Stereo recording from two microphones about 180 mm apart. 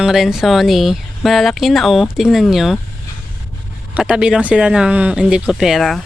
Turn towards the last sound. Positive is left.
turn(degrees=0)  # may be behind; listen again after turning